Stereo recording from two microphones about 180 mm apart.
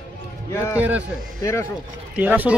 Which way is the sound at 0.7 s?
10° right (ahead or behind).